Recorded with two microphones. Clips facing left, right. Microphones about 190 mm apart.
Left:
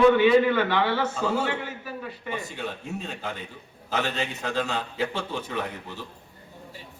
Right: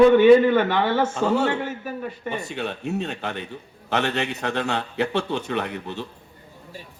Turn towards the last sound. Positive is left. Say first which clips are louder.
# right 5 dB
turn(degrees=-70)  # may be behind; listen again after turning